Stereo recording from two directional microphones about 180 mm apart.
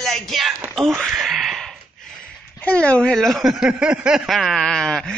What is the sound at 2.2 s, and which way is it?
Speech, 5° left (ahead or behind).